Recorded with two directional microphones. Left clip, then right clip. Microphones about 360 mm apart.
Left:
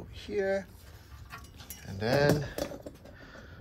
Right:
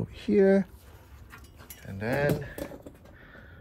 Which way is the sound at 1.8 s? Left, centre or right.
Centre.